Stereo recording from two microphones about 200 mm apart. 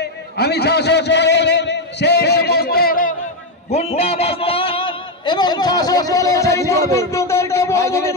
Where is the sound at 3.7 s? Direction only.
30° left (ahead or behind).